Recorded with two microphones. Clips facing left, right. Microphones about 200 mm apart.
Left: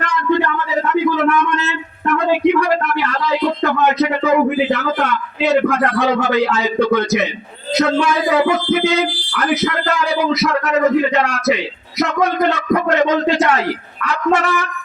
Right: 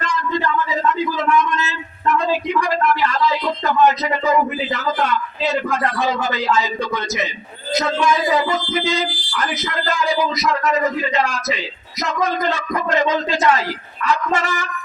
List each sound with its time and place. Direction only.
0.0 s a man's voice: 65° left (ahead or behind)